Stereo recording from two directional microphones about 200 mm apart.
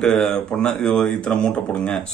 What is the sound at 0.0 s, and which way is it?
Speech, centre (ahead or behind).